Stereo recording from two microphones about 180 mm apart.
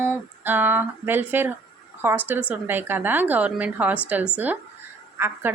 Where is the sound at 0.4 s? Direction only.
10° right (ahead or behind).